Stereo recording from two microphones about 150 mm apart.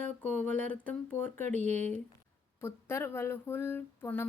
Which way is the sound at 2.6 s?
15° left (ahead or behind).